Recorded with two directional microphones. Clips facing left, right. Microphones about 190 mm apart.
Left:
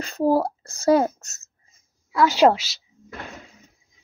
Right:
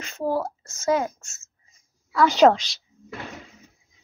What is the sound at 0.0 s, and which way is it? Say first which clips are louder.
A child's voice: left 5 dB; 35° left (ahead or behind).